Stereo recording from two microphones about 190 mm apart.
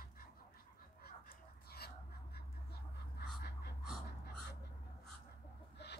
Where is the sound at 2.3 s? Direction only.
55° left (ahead or behind).